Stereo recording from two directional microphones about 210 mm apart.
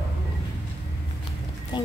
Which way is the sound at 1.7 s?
20° left (ahead or behind).